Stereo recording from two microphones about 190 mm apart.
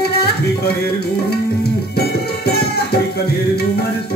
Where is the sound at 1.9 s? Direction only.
55° left (ahead or behind).